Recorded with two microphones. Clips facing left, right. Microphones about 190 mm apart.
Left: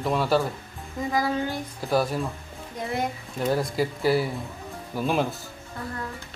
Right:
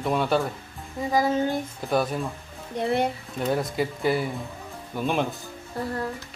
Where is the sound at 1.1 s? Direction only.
20° right (ahead or behind).